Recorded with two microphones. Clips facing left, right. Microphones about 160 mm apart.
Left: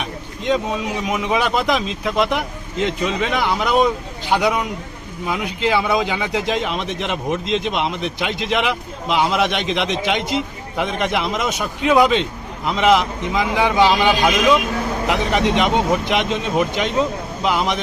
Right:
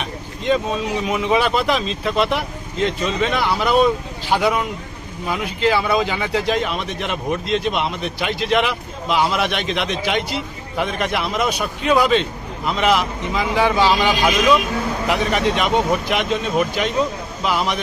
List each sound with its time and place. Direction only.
0.0 s speech: 15° left (ahead or behind)
15.3 s speech: 20° left (ahead or behind)